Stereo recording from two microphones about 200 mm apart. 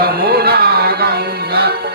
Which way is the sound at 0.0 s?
50° right (ahead or behind).